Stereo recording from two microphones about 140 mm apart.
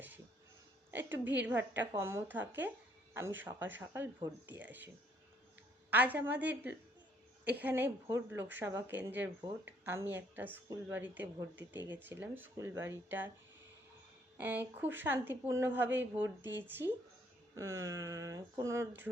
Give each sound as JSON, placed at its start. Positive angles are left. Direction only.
{"t": 0.9, "sound": "a woman's voice", "side_deg": -15}
{"t": 5.9, "sound": "speech", "side_deg": -10}
{"t": 14.3, "sound": "speech", "side_deg": -15}